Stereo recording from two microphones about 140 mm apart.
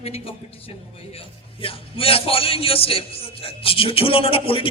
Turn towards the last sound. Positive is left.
turn(degrees=40)  # may be behind; listen again after turning